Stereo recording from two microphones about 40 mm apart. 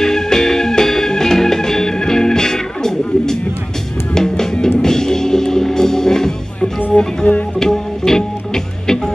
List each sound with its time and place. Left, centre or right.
0.0 s music: centre
6.9 s music: left
7.5 s music: centre